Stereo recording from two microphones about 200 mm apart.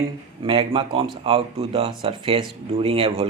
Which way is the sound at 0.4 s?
25° right (ahead or behind).